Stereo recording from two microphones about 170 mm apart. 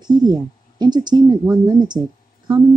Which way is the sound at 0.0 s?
25° right (ahead or behind).